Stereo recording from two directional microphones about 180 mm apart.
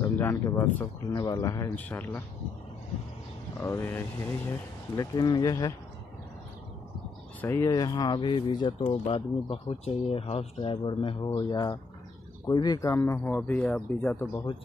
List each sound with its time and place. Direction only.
0.2 s speech: 15° left (ahead or behind)
3.6 s speech: 15° left (ahead or behind)
7.4 s speech: 20° left (ahead or behind)